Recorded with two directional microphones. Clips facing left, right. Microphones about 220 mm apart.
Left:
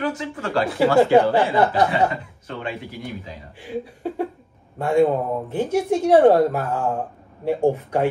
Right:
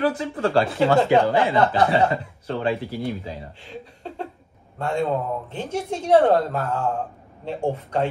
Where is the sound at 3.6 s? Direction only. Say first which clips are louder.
Left 9 dB; 10° left (ahead or behind).